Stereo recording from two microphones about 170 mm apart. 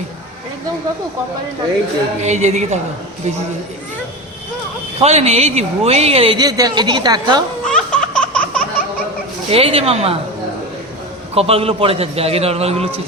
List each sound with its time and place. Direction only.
2.2 s speech: 40° right (ahead or behind)
4.9 s speech: 40° right (ahead or behind)
7.7 s a sound: 5° left (ahead or behind)
9.5 s speech: 35° right (ahead or behind)
11.3 s speech: 35° right (ahead or behind)